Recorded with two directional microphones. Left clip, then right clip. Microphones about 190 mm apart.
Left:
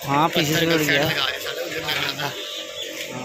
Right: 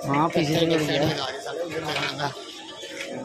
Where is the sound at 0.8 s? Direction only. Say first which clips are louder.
Left 5 dB; 20° right (ahead or behind).